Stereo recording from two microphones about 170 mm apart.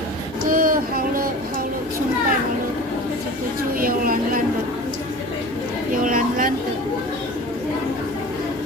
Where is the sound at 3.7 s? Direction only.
55° right (ahead or behind).